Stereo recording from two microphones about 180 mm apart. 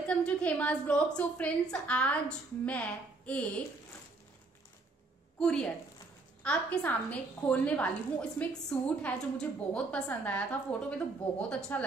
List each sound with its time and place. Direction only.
0.1 s a woman's voice: 5° left (ahead or behind)
5.4 s a woman's voice: 5° left (ahead or behind)